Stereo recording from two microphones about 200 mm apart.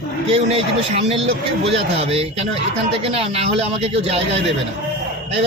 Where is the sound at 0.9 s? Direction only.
30° right (ahead or behind).